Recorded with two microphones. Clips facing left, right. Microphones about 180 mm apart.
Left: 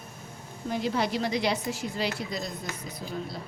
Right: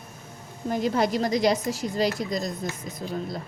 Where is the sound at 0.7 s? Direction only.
45° right (ahead or behind).